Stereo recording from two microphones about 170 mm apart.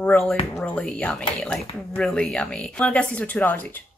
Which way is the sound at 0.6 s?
5° left (ahead or behind).